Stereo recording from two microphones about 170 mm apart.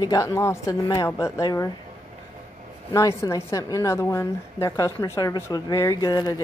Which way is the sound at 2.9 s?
20° left (ahead or behind).